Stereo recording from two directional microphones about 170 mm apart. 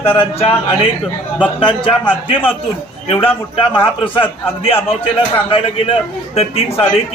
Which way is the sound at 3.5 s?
30° left (ahead or behind).